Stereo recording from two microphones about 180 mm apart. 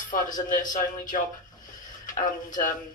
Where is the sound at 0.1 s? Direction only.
45° left (ahead or behind).